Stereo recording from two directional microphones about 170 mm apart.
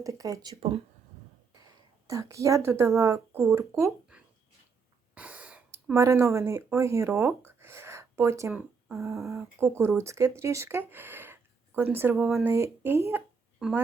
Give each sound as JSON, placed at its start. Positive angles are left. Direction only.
{"t": 0.0, "sound": "speech", "side_deg": -20}
{"t": 0.5, "sound": "speech", "side_deg": -35}
{"t": 2.0, "sound": "speech", "side_deg": -20}
{"t": 4.1, "sound": "a sound", "side_deg": -5}
{"t": 5.1, "sound": "speech", "side_deg": -10}
{"t": 13.6, "sound": "a woman's voice", "side_deg": -5}